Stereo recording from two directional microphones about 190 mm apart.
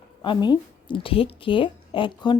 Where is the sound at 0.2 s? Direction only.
20° left (ahead or behind).